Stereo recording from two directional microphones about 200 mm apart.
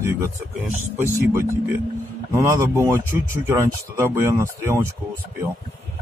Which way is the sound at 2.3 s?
15° right (ahead or behind).